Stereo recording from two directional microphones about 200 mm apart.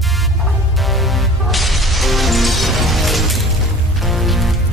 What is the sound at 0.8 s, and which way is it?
Music, centre (ahead or behind).